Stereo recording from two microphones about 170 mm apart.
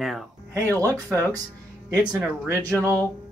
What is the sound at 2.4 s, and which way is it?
Speech, 20° right (ahead or behind).